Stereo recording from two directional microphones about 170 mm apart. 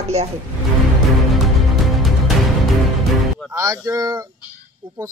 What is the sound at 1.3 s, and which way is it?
Music, centre (ahead or behind).